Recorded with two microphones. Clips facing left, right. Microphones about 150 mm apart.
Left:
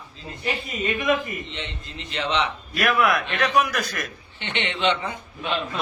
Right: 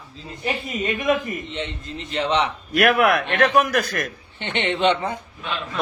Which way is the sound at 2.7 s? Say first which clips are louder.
Right 4 dB; 65° right (ahead or behind).